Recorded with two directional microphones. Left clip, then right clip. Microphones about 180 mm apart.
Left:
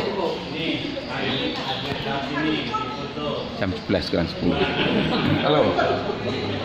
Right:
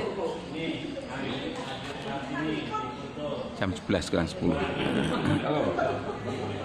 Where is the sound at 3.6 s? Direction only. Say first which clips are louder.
Left 5 dB; 20° right (ahead or behind).